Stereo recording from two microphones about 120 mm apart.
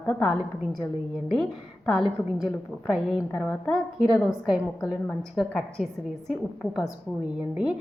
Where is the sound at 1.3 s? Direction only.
Centre (ahead or behind).